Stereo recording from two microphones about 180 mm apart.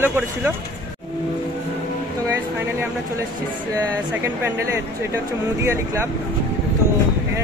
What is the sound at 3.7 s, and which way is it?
Speech, 15° right (ahead or behind).